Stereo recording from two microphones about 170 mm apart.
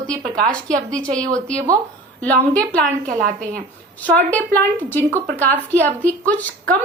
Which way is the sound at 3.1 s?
55° right (ahead or behind).